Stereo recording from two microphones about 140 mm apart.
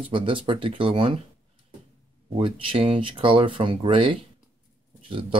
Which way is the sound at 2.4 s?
40° right (ahead or behind).